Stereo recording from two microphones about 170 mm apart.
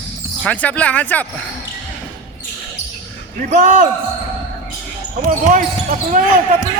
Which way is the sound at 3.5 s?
55° right (ahead or behind).